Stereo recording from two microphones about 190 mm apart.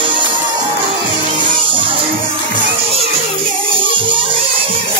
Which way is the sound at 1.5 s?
25° right (ahead or behind).